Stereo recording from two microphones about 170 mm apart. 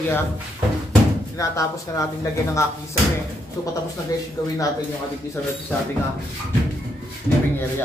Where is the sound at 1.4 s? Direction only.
20° left (ahead or behind).